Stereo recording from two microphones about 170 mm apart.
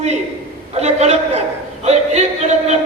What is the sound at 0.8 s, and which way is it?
A man's voice, 40° right (ahead or behind).